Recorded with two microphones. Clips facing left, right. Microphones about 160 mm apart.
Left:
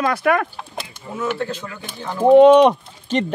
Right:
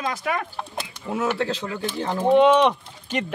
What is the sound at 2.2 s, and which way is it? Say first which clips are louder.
Speech: left 7 dB; 45° left (ahead or behind).